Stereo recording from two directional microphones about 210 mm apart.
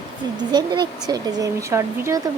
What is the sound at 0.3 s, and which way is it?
A woman's voice, 20° right (ahead or behind).